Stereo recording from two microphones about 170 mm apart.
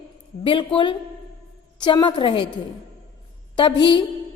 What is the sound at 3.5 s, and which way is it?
Speech, 30° left (ahead or behind).